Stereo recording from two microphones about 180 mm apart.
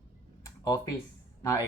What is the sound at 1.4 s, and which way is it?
Speech, 15° left (ahead or behind).